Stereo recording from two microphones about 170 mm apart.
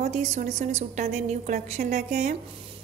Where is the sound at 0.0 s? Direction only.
45° right (ahead or behind).